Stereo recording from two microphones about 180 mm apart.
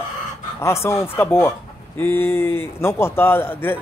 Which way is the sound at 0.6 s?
15° left (ahead or behind).